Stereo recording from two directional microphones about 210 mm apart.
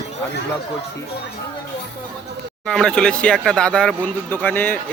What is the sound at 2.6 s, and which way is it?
Speech, 5° left (ahead or behind).